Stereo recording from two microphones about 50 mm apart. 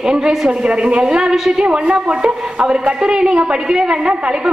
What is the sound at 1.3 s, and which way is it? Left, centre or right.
Speech, centre.